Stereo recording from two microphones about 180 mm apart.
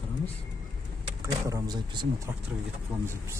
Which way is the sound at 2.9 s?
5° right (ahead or behind).